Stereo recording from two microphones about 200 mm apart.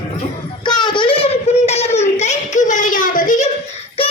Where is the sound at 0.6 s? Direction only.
20° left (ahead or behind).